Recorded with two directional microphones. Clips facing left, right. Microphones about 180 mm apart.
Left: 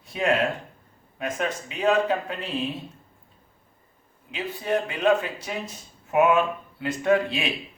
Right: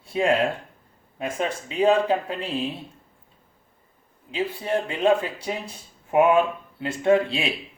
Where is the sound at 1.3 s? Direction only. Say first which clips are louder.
Right 6 dB; 30° right (ahead or behind).